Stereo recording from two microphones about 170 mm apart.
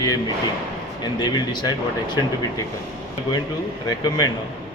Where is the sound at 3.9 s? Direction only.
25° left (ahead or behind).